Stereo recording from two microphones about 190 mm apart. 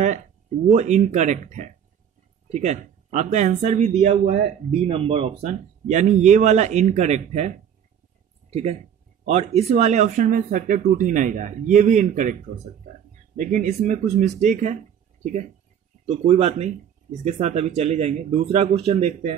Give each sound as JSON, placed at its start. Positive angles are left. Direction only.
{"t": 0.7, "sound": "speech", "side_deg": -35}
{"t": 5.5, "sound": "speech", "side_deg": -40}
{"t": 16.1, "sound": "speech", "side_deg": -35}